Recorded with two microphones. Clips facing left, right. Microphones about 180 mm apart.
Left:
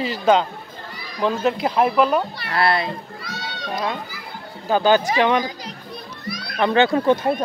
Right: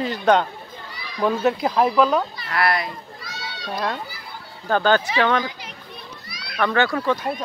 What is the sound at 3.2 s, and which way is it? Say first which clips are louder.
Run: left 3 dB; 55° left (ahead or behind).